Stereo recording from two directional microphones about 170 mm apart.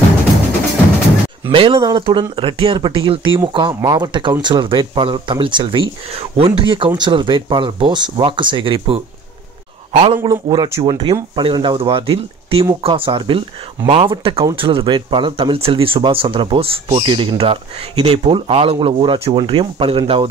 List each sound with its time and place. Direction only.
1.5 s speech: 30° right (ahead or behind)
10.2 s speech: 25° right (ahead or behind)